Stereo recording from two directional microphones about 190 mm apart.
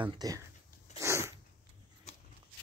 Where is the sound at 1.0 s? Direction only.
15° right (ahead or behind).